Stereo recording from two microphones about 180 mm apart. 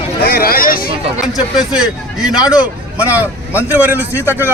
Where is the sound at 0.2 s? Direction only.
55° left (ahead or behind).